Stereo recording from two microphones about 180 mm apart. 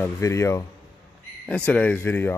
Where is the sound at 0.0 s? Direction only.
15° left (ahead or behind).